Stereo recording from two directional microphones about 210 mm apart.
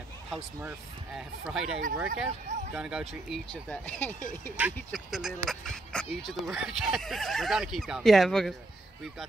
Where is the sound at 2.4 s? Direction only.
35° right (ahead or behind).